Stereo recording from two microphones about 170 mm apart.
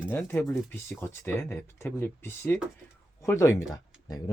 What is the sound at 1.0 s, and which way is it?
Speech, 15° left (ahead or behind).